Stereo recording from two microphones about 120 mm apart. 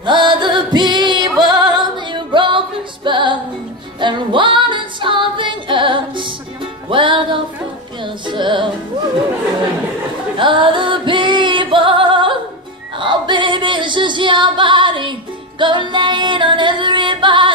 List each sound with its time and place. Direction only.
0.0 s music: 40° right (ahead or behind)
10.3 s music: 45° right (ahead or behind)
13.0 s female singing: 40° right (ahead or behind)
15.6 s music: 40° right (ahead or behind)